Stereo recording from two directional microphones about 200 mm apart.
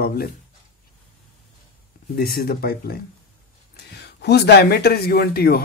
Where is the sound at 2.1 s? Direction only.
50° left (ahead or behind).